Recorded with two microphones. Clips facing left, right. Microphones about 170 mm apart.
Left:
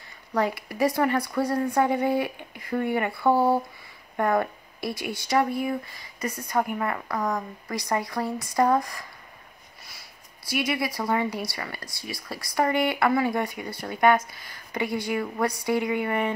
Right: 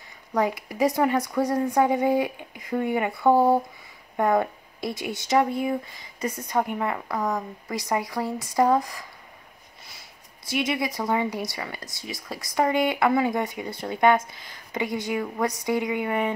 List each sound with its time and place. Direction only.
0.3 s speech: 20° right (ahead or behind)
7.2 s speech: 5° right (ahead or behind)
7.6 s speech: 20° right (ahead or behind)
10.5 s speech: 20° right (ahead or behind)